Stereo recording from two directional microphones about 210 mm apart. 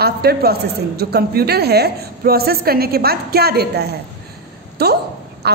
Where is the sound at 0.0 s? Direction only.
50° right (ahead or behind).